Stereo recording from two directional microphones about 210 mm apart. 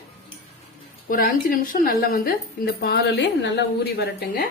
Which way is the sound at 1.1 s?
40° left (ahead or behind).